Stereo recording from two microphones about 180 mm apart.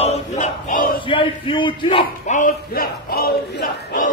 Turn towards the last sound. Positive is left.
turn(degrees=60)  # may be behind; listen again after turning